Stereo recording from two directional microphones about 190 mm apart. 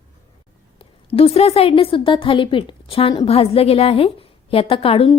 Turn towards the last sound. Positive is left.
turn(degrees=30)  # may be behind; listen again after turning